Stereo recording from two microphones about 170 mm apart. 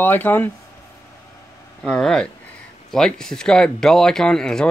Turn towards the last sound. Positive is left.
turn(degrees=5)  # may be behind; listen again after turning